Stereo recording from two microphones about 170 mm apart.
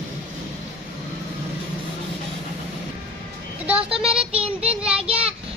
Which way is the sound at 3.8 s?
5° right (ahead or behind).